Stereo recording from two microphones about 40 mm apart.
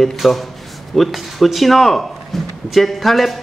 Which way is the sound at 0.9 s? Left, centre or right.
Centre.